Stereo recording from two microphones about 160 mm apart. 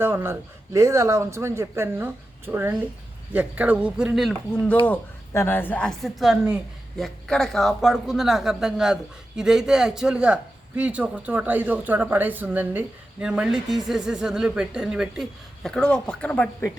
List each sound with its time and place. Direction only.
0.0 s a man's voice: 15° right (ahead or behind)
4.9 s a woman's voice: 15° left (ahead or behind)